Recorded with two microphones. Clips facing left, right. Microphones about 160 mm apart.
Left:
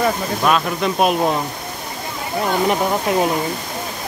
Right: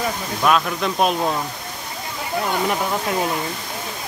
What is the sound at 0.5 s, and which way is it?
Speech, 5° left (ahead or behind).